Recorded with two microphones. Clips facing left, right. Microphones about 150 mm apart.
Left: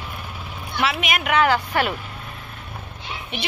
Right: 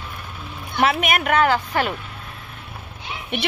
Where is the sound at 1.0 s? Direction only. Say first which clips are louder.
Right 1 dB; 50° right (ahead or behind).